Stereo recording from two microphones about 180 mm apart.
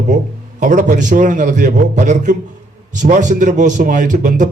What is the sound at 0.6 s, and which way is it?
Speech, 45° right (ahead or behind).